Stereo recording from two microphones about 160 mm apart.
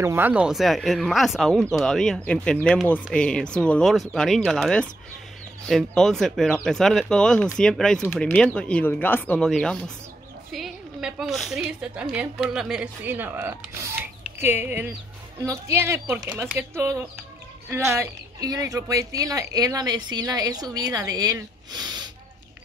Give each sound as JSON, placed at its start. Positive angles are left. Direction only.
{"t": 0.0, "sound": "a woman's voice", "side_deg": -15}